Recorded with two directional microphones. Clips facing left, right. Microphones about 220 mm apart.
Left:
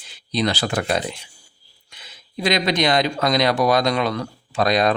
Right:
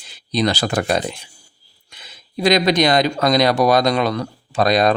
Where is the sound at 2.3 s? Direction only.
40° right (ahead or behind).